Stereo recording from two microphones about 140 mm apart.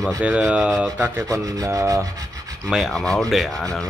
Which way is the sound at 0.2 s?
10° right (ahead or behind).